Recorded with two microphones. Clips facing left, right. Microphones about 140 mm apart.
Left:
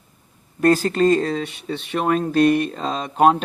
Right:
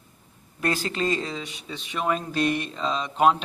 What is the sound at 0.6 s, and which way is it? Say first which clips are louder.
Speech: left 10 dB; 45° left (ahead or behind).